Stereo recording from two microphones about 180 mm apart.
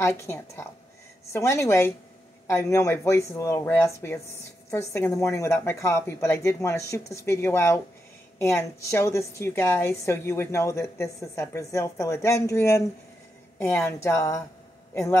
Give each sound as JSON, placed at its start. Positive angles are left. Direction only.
{"t": 0.0, "sound": "a woman's voice", "side_deg": 15}